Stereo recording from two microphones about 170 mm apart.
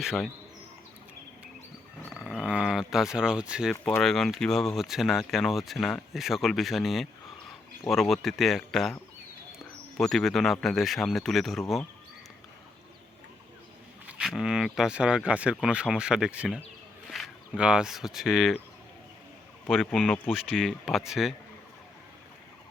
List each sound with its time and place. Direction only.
0.0 s speech: 5° right (ahead or behind)
2.1 s speech: 5° right (ahead or behind)
10.0 s speech: centre (ahead or behind)
14.1 s speech: 5° right (ahead or behind)
19.6 s speech: centre (ahead or behind)